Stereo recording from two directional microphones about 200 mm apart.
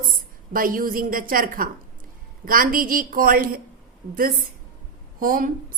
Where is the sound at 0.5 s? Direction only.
45° right (ahead or behind).